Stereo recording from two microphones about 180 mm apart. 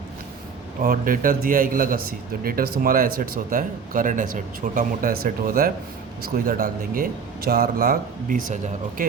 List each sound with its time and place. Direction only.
0.8 s speech: 50° right (ahead or behind)